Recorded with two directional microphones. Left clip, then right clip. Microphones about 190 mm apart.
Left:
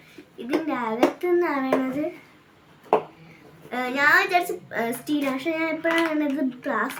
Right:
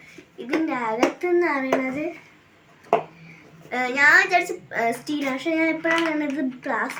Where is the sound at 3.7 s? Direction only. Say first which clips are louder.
Right 3 dB; 20° left (ahead or behind).